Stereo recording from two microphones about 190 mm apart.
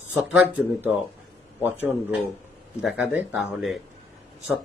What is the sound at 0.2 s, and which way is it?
Speech, 10° right (ahead or behind).